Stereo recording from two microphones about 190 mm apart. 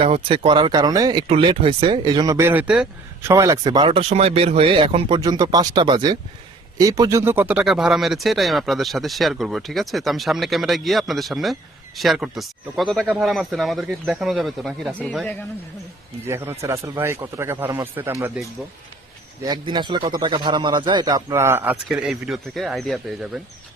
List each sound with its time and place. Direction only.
0.0 s speech: 30° right (ahead or behind); by 15.4 s 5° left (ahead or behind)
16.2 s speech: 15° right (ahead or behind)
19.5 s speech: 25° right (ahead or behind); by 23.4 s centre (ahead or behind)